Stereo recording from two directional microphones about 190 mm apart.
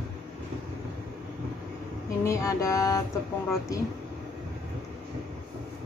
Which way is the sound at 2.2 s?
15° left (ahead or behind).